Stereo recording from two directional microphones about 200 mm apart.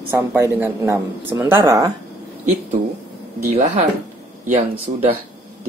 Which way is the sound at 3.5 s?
35° right (ahead or behind).